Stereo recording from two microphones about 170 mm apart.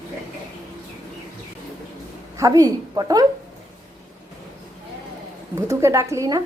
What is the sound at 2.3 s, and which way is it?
Speech, 20° right (ahead or behind).